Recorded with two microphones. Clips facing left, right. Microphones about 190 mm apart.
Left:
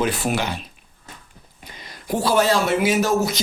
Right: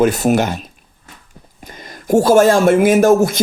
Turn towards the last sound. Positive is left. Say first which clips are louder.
# right 8 dB
turn(degrees=-50)  # may be behind; listen again after turning